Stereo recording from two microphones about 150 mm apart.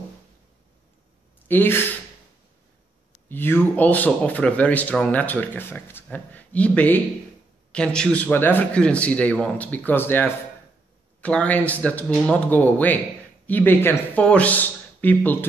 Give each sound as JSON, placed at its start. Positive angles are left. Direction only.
{"t": 1.5, "sound": "speech", "side_deg": 15}
{"t": 3.3, "sound": "speech", "side_deg": 15}